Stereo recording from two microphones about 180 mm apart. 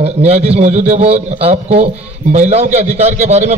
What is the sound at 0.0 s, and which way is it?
A man's voice, 35° right (ahead or behind).